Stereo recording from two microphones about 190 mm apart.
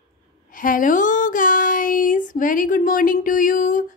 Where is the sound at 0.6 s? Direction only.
45° left (ahead or behind).